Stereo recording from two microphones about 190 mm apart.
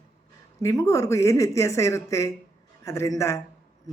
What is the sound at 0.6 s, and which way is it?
A woman's voice, 15° left (ahead or behind).